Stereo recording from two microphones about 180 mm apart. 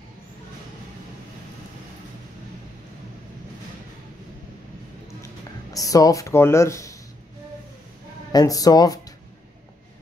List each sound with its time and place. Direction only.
5.7 s speech: 20° left (ahead or behind)
8.3 s speech: 20° left (ahead or behind)